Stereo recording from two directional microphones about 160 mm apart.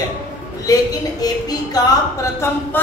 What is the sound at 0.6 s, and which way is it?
A woman's voice, 20° left (ahead or behind).